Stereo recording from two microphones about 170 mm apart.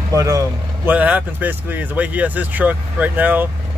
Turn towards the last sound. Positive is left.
turn(degrees=-10)  # may be behind; listen again after turning